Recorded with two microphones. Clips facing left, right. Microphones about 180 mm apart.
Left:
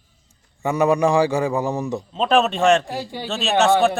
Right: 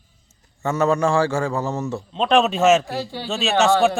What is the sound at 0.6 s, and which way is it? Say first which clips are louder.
A man's voice: left 2 dB; 15° left (ahead or behind).